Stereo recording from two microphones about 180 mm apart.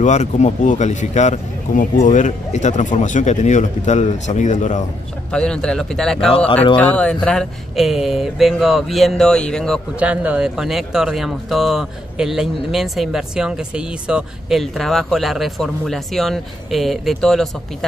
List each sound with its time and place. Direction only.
0.0 s speech: 40° left (ahead or behind)
5.3 s speech: 5° left (ahead or behind)
9.9 s speech: 5° right (ahead or behind)